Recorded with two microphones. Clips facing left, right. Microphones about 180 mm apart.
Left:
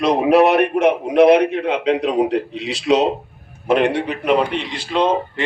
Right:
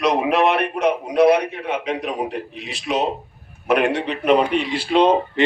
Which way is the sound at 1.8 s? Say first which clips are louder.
Left 7 dB; 85° left.